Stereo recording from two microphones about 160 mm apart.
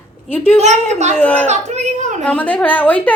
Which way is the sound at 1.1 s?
10° left (ahead or behind).